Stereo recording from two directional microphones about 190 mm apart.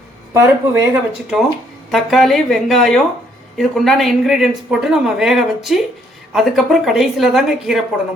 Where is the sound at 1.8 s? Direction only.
Centre (ahead or behind).